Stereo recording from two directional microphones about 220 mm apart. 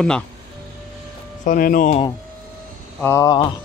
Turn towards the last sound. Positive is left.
turn(degrees=15)  # may be behind; listen again after turning